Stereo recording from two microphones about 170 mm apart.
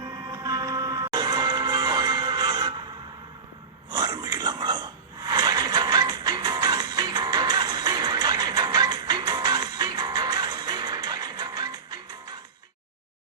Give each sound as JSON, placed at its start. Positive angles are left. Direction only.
{"t": 0.0, "sound": "music", "side_deg": -20}
{"t": 3.8, "sound": "a sound", "side_deg": -25}
{"t": 5.2, "sound": "music", "side_deg": -25}